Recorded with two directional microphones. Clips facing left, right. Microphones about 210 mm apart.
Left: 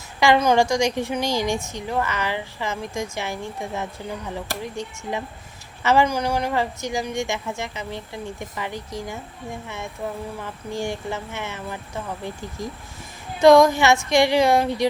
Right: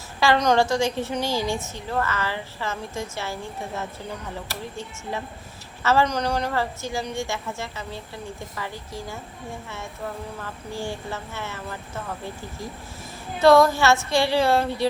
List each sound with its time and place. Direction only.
0.2 s a woman's voice: 10° left (ahead or behind)
10.4 s a woman's voice: 15° left (ahead or behind)
13.4 s a woman's voice: 15° left (ahead or behind)